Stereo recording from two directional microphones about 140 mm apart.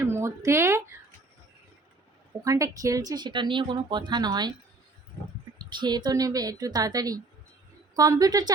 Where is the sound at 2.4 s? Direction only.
25° right (ahead or behind).